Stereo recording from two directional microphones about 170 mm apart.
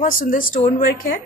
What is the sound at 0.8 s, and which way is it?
Speech, 60° left (ahead or behind).